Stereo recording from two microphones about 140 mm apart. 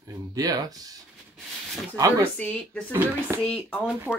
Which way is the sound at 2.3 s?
10° left (ahead or behind).